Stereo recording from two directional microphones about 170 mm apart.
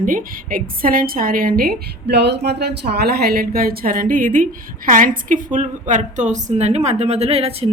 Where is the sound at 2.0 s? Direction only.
80° right.